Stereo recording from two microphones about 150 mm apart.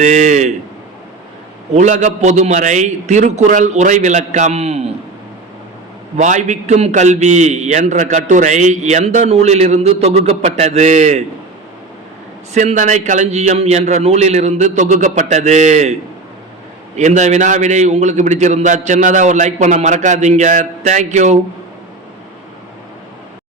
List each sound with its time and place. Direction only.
0.0 s a man's voice: 50° right (ahead or behind)
1.7 s a man's voice: 50° right (ahead or behind)
6.1 s a man's voice: 50° right (ahead or behind)
12.5 s a man's voice: 55° right (ahead or behind)
17.0 s a man's voice: 50° right (ahead or behind)